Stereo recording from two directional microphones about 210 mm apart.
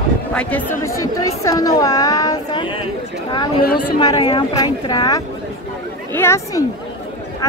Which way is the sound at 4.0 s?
20° left (ahead or behind).